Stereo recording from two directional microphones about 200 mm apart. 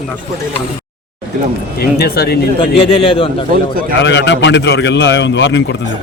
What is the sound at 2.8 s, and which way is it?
Speech, 30° left (ahead or behind).